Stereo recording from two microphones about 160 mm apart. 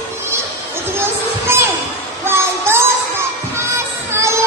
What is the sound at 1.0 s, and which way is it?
Music, 15° right (ahead or behind).